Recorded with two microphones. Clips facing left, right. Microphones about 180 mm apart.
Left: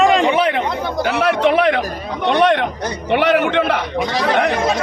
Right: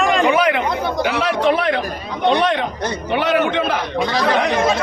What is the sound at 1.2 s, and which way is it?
A man's voice, 70° left (ahead or behind).